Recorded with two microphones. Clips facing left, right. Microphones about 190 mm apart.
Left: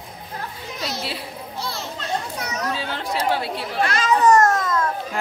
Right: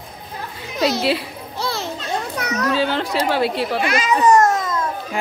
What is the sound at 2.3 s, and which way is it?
A child's voice, 80° right.